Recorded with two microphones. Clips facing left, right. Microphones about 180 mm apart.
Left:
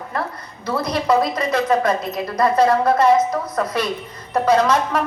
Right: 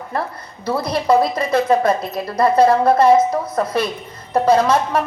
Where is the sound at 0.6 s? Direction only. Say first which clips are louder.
Right 2 dB; 30° right (ahead or behind).